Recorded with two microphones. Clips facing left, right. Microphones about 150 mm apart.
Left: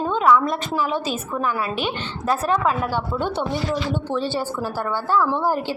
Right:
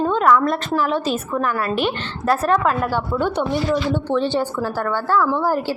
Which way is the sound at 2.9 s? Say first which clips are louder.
Right 3 dB; 20° left (ahead or behind).